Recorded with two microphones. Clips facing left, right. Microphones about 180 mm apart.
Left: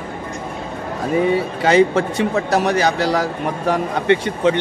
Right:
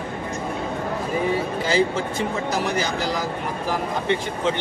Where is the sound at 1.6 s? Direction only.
70° left (ahead or behind).